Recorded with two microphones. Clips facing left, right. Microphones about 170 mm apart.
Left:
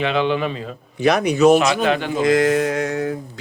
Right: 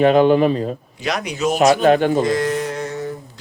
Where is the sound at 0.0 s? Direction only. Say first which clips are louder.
Right 7 dB; 45° right (ahead or behind).